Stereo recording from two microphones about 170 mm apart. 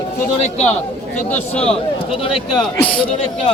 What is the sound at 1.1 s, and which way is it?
Speech, 10° left (ahead or behind).